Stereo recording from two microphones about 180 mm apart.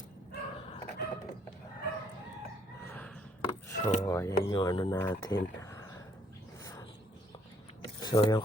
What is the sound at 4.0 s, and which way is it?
Speech, 15° left (ahead or behind).